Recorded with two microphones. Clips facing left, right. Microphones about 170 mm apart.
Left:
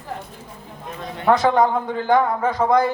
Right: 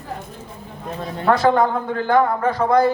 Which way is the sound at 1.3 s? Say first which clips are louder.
Even; 20° left (ahead or behind).